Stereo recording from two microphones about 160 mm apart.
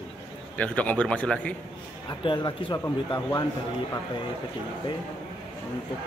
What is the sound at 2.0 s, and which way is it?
Speech, 30° left (ahead or behind).